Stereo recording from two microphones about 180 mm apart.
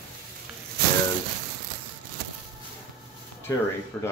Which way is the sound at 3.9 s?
10° left (ahead or behind).